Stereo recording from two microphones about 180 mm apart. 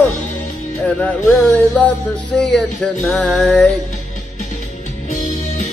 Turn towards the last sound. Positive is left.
turn(degrees=45)  # may be behind; listen again after turning